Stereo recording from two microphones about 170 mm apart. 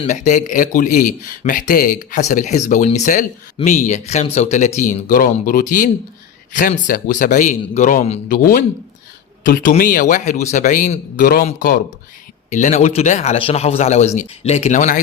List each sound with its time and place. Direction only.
0.0 s speech: 45° left (ahead or behind)
8.3 s speech: 55° left (ahead or behind)
12.5 s a man's voice: 45° left (ahead or behind)